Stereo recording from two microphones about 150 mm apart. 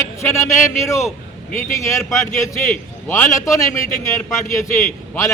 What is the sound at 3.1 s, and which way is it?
Speech, 20° left (ahead or behind).